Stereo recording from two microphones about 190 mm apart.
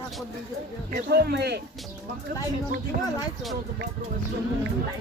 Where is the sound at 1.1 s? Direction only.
60° right (ahead or behind).